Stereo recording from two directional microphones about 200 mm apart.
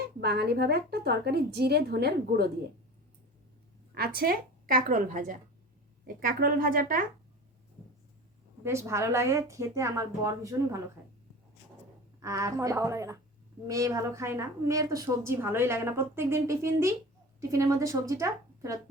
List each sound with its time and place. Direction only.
0.2 s a woman's voice: 55° right (ahead or behind)
3.9 s a woman's voice: 50° right (ahead or behind)
8.6 s a woman's voice: 15° right (ahead or behind)
12.2 s a woman's voice: 15° right (ahead or behind)